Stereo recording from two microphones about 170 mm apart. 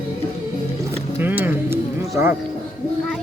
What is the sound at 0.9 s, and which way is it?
Music, 10° right (ahead or behind).